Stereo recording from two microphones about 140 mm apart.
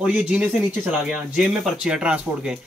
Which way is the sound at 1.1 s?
5° right (ahead or behind).